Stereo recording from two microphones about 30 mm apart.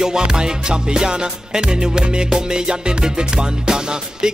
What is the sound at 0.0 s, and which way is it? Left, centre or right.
Music, right.